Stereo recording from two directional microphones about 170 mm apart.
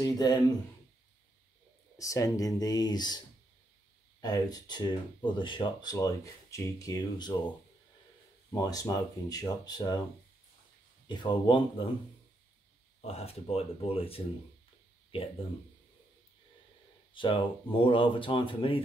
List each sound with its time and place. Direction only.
0.0 s speech: 20° left (ahead or behind)
2.0 s speech: 20° left (ahead or behind)
4.2 s speech: 25° left (ahead or behind)
8.5 s speech: 20° left (ahead or behind)
11.1 s speech: 30° left (ahead or behind)
13.0 s speech: 35° left (ahead or behind)
17.1 s speech: 30° left (ahead or behind)